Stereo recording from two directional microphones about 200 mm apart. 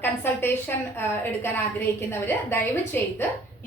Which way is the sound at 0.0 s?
10° left (ahead or behind).